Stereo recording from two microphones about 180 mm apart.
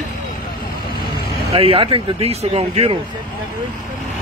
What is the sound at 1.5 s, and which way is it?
Speech, 30° right (ahead or behind).